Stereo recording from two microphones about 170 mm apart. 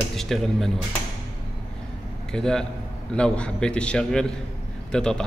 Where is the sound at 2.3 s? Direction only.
5° left (ahead or behind).